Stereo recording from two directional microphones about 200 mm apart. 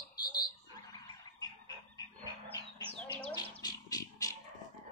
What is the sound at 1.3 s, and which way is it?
Frog, 20° left (ahead or behind).